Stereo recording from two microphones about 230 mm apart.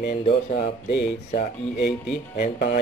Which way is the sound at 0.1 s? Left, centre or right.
Left.